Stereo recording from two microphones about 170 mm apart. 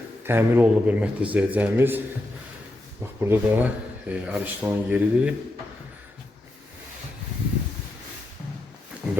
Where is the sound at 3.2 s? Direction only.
10° right (ahead or behind).